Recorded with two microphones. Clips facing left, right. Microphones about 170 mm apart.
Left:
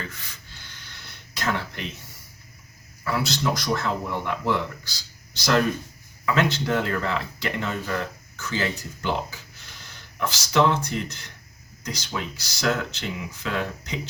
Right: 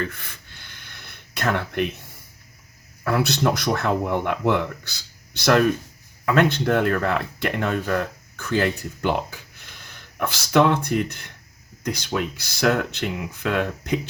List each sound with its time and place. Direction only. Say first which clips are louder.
0.0 s gasp: right 8 dB; 55° right (ahead or behind)
3.0 s speech: right 5 dB; 55° right (ahead or behind)